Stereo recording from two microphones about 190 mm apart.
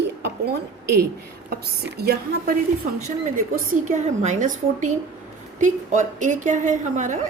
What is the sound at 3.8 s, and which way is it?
A woman's voice, 40° right (ahead or behind).